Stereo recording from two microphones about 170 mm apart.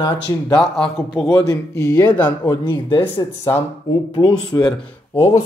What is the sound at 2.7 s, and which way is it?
Speech, 30° left (ahead or behind).